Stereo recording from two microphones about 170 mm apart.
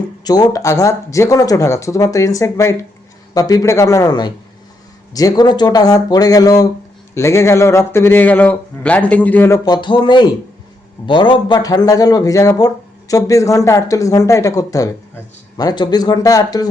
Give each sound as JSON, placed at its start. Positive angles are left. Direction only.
{"t": 0.3, "sound": "a man's voice", "side_deg": 20}
{"t": 9.6, "sound": "a man's voice", "side_deg": 25}